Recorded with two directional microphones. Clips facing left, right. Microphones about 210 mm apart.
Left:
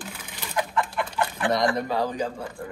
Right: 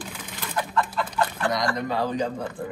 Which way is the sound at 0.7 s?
20° left (ahead or behind).